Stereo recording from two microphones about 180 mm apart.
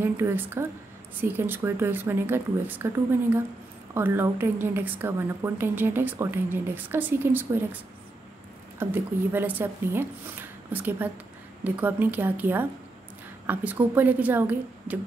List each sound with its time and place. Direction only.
0.0 s a woman's voice: 15° right (ahead or behind)
8.7 s a woman's voice: 10° right (ahead or behind)